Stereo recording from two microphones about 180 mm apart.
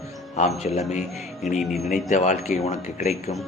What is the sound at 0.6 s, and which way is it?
Mantra, 35° left (ahead or behind).